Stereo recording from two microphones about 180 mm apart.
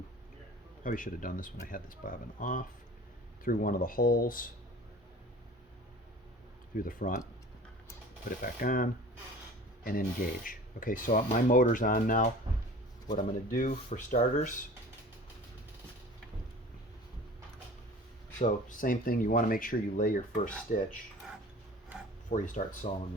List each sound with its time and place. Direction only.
0.9 s speech: 50° left (ahead or behind)
6.7 s speech: 50° left (ahead or behind)
8.3 s speech: 50° left (ahead or behind)
18.3 s speech: 45° left (ahead or behind)
22.3 s speech: 45° left (ahead or behind)